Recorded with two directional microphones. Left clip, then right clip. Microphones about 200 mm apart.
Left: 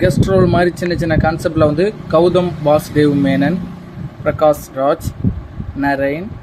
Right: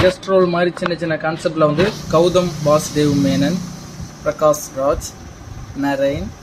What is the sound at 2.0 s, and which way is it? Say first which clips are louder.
Speech: left 2 dB; 5° left (ahead or behind).